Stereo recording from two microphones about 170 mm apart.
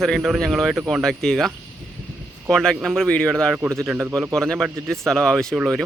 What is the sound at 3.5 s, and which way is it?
Speech, 15° right (ahead or behind).